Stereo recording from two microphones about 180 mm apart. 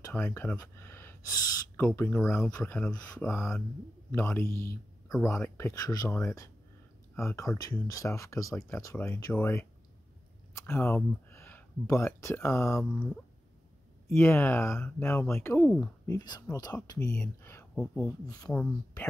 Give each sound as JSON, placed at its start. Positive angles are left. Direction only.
{"t": 0.0, "sound": "speech", "side_deg": 15}
{"t": 10.5, "sound": "a sound", "side_deg": 10}
{"t": 11.2, "sound": "speech", "side_deg": 15}
{"t": 14.1, "sound": "speech", "side_deg": 10}